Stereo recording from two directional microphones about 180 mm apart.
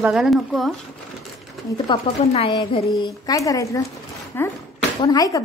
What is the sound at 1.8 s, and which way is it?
Speech, 30° left (ahead or behind).